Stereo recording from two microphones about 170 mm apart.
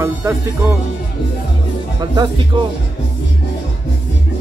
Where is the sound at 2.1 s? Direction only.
25° right (ahead or behind).